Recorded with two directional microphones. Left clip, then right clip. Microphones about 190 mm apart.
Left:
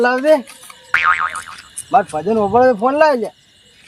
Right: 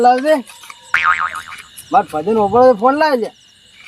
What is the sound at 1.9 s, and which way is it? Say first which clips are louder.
Speech: right 1 dB; 10° left (ahead or behind).